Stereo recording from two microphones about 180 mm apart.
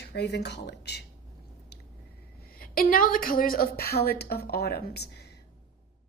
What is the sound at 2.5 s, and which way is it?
A woman's voice, 55° left (ahead or behind).